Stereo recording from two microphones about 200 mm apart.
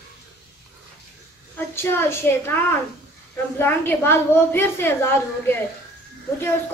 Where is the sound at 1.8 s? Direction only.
10° left (ahead or behind).